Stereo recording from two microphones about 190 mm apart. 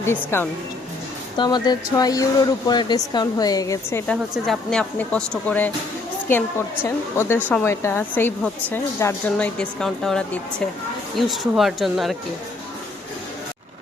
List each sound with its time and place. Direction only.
0.0 s speech: 10° left (ahead or behind)
4.0 s speech: 5° left (ahead or behind)
6.8 s speech: 15° left (ahead or behind)
11.3 s speech: centre (ahead or behind)